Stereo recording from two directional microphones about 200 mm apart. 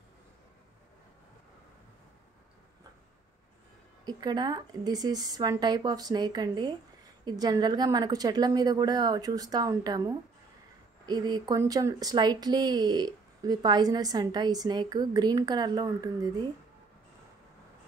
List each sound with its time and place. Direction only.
4.0 s speech: 20° right (ahead or behind)